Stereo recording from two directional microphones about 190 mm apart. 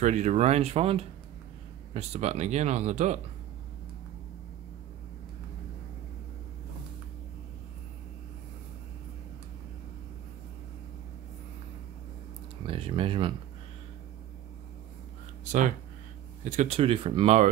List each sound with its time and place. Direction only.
0.0 s speech: 40° right (ahead or behind)
12.6 s speech: 30° right (ahead or behind)
16.4 s speech: 35° right (ahead or behind)